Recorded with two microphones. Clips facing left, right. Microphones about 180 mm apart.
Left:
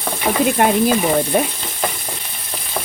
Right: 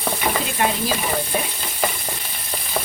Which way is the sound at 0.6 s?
55° left (ahead or behind).